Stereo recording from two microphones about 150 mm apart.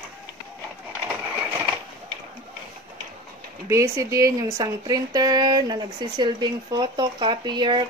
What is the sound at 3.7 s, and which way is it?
Speech, 20° right (ahead or behind).